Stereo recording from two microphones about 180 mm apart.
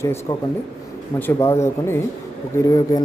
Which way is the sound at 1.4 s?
15° left (ahead or behind).